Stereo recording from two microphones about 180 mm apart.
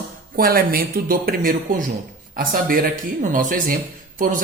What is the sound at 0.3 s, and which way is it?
A woman's voice, 55° right (ahead or behind).